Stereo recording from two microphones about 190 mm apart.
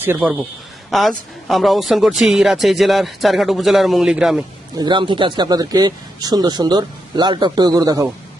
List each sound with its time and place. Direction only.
0.0 s a man's voice: 10° right (ahead or behind)
4.8 s speech: 25° right (ahead or behind)